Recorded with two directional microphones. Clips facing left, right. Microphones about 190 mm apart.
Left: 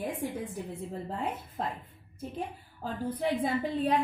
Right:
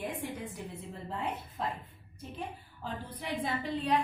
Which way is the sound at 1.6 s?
45° left (ahead or behind).